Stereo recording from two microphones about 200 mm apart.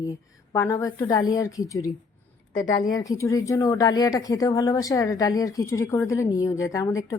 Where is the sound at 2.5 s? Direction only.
40° left (ahead or behind).